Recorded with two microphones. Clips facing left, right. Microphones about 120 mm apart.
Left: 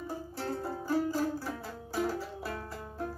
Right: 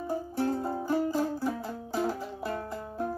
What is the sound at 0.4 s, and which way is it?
Music, 20° right (ahead or behind).